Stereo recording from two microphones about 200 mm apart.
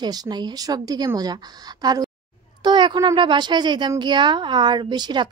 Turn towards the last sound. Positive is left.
turn(degrees=-20)  # may be behind; listen again after turning